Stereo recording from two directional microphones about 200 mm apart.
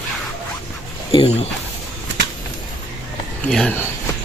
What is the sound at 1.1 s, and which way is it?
Speech, 30° left (ahead or behind).